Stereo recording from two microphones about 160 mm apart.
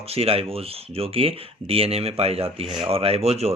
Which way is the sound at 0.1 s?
40° right (ahead or behind).